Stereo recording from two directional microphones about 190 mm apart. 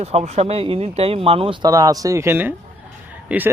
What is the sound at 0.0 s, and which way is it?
A man's voice, 35° right (ahead or behind).